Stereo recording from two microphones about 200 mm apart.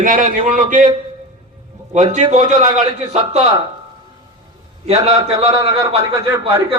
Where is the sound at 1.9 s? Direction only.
35° right (ahead or behind).